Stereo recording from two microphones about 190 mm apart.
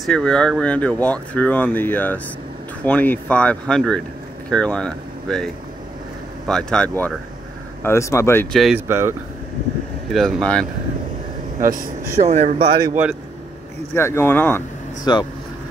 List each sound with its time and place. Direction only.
0.0 s speech: 5° left (ahead or behind)
8.5 s speech: centre (ahead or behind)
8.8 s speech: 10° right (ahead or behind)
10.1 s speech: centre (ahead or behind)
11.6 s speech: 45° right (ahead or behind); by 12.9 s 30° right (ahead or behind)
12.9 s speech: 5° right (ahead or behind)
13.9 s speech: 15° left (ahead or behind)
15.1 s speech: 20° left (ahead or behind)